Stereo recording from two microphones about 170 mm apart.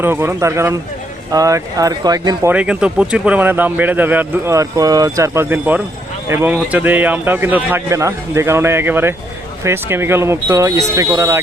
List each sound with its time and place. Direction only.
0.0 s speech: 15° right (ahead or behind)